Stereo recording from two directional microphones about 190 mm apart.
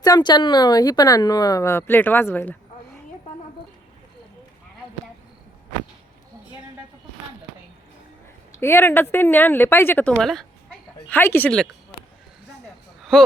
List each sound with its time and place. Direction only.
0.0 s a woman's voice: 20° left (ahead or behind)
8.5 s speech: 15° left (ahead or behind)
13.0 s a sound: centre (ahead or behind)